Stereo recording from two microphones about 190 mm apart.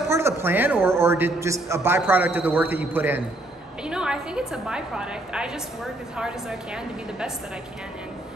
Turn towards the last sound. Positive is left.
turn(degrees=-5)  # may be behind; listen again after turning